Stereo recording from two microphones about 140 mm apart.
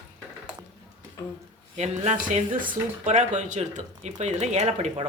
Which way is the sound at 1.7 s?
55° right (ahead or behind).